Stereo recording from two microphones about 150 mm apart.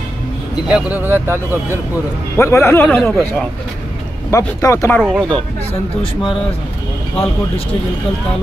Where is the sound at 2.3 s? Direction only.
15° left (ahead or behind).